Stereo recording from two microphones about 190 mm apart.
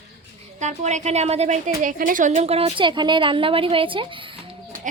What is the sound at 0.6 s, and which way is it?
A woman's voice, 40° right (ahead or behind).